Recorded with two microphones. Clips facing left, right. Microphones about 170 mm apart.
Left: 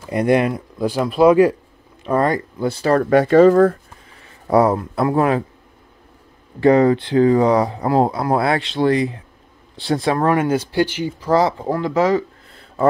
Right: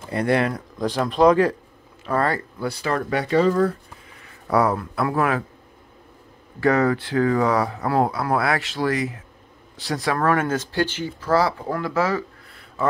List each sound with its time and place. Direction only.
0.1 s speech: 15° left (ahead or behind)
2.8 s speech: 45° left (ahead or behind)
4.5 s speech: 20° left (ahead or behind)
6.6 s speech: 20° left (ahead or behind)